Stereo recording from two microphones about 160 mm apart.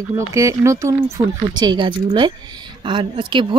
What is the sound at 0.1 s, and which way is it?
Speech, 20° right (ahead or behind).